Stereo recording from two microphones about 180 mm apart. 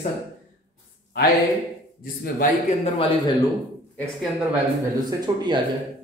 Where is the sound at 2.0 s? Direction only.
55° left (ahead or behind).